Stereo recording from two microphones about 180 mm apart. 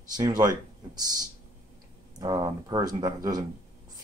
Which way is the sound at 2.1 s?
20° right (ahead or behind).